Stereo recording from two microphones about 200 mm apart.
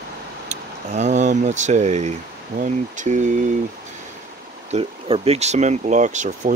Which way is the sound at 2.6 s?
35° right (ahead or behind).